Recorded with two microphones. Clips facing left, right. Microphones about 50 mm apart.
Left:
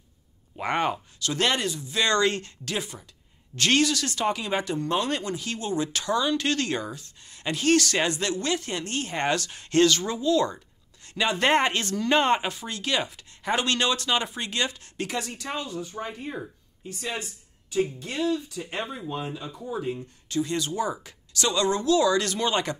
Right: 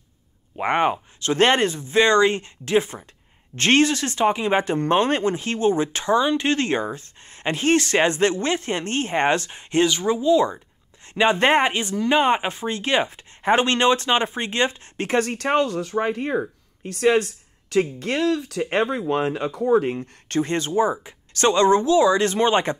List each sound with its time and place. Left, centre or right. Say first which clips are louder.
0.6 s speech: right 5 dB; right